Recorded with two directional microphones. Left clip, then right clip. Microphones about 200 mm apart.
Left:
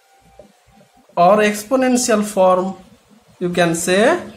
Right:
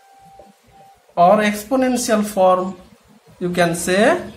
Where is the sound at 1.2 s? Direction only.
25° left (ahead or behind).